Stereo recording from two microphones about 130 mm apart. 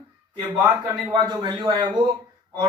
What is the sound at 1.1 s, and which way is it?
Speech, 35° right (ahead or behind).